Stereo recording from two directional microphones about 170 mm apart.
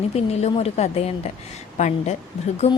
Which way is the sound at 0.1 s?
40° left (ahead or behind).